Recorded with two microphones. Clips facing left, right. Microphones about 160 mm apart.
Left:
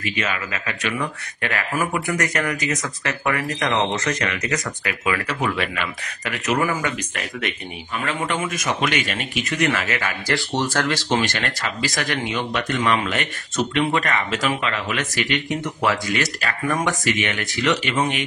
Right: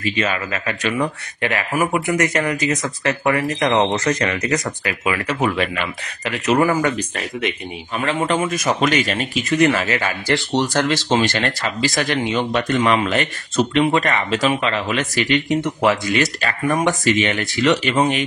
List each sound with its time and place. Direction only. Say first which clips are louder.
0.0 s speech: right 5 dB; 30° right (ahead or behind)
5.0 s speech: right 3 dB; 20° right (ahead or behind)
6.7 s speech: right 6 dB; 40° right (ahead or behind)
8.0 s speech: right 5 dB; 25° right (ahead or behind)